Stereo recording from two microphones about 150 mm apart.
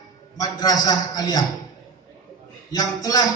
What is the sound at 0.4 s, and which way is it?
A man's voice, 25° left (ahead or behind).